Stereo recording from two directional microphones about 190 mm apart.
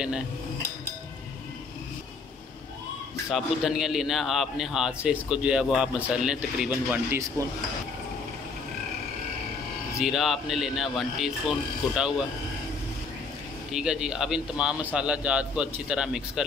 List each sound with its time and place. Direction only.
3.3 s a man's voice: centre (ahead or behind)
9.9 s a man's voice: centre (ahead or behind)
13.7 s a man's voice: 5° right (ahead or behind)